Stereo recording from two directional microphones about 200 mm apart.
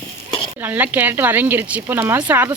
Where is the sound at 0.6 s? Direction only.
10° right (ahead or behind).